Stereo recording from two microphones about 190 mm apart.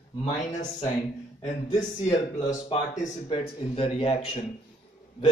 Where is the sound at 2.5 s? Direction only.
40° left (ahead or behind).